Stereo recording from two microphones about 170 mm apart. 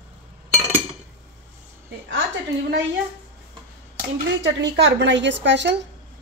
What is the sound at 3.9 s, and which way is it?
Speech, 85° right.